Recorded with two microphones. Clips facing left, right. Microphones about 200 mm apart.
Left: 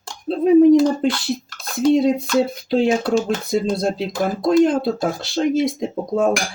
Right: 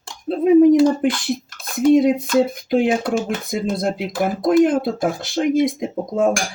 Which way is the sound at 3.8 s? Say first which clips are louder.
Left 1 dB; 25° left (ahead or behind).